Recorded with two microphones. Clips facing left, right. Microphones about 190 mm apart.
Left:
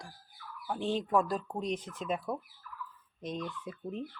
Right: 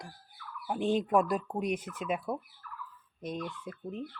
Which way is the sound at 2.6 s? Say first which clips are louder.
Right 2 dB; 65° right (ahead or behind).